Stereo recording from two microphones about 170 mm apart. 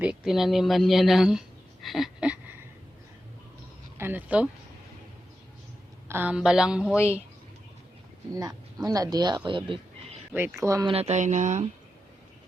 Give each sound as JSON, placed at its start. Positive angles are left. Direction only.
{"t": 0.0, "sound": "speech", "side_deg": -5}
{"t": 3.9, "sound": "speech", "side_deg": -10}
{"t": 6.1, "sound": "a woman's voice", "side_deg": -10}
{"t": 8.3, "sound": "speech", "side_deg": -20}
{"t": 10.3, "sound": "speech", "side_deg": -15}
{"t": 10.9, "sound": "speech", "side_deg": -40}